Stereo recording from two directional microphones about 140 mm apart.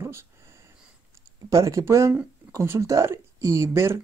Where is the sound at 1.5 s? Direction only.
25° right (ahead or behind).